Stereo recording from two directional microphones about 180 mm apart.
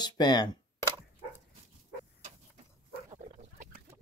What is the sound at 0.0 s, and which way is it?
Speech, 25° left (ahead or behind).